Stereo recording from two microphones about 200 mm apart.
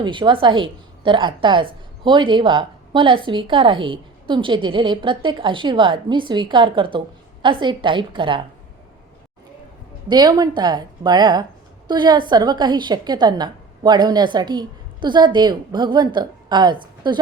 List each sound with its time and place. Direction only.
0.0 s a woman's voice: 25° right (ahead or behind)
10.1 s a woman's voice: 20° right (ahead or behind)